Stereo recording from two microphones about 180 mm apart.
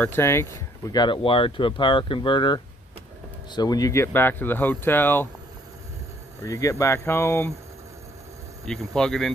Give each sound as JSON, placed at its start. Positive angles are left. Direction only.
{"t": 0.0, "sound": "speech", "side_deg": 15}
{"t": 6.4, "sound": "speech", "side_deg": 15}
{"t": 8.6, "sound": "speech", "side_deg": 5}